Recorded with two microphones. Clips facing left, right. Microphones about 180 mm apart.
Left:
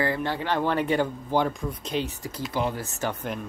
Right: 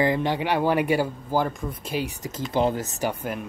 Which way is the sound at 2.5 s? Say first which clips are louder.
Right 6 dB; 30° right (ahead or behind).